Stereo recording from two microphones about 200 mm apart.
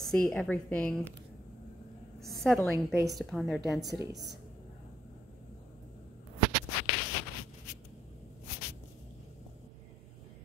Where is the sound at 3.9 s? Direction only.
15° right (ahead or behind).